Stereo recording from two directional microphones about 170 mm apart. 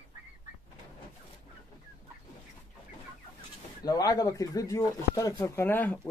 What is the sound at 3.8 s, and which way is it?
A man's voice, 20° left (ahead or behind).